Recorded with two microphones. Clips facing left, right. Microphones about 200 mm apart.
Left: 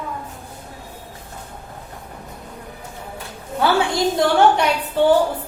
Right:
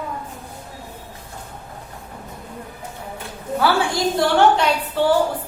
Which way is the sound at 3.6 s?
20° left (ahead or behind).